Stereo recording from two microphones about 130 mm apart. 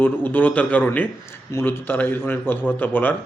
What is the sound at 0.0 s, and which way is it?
A man's voice, 15° left (ahead or behind).